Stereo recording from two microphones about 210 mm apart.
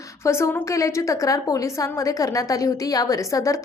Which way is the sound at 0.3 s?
10° left (ahead or behind).